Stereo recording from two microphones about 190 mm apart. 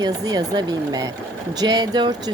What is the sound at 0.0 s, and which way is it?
Speech, 20° right (ahead or behind).